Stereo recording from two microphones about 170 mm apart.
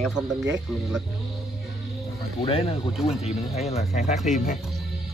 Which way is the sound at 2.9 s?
Centre (ahead or behind).